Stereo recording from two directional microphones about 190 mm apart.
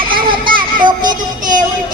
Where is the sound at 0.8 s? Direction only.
25° right (ahead or behind).